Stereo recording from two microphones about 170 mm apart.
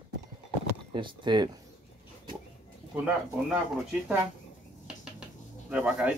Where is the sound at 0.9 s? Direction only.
25° right (ahead or behind).